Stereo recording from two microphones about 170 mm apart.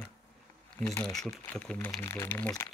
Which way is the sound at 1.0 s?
5° left (ahead or behind).